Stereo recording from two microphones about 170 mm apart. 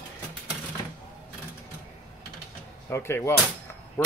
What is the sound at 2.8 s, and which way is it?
Speech, 15° left (ahead or behind).